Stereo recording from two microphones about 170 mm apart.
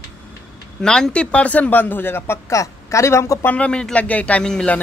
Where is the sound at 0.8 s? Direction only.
5° left (ahead or behind).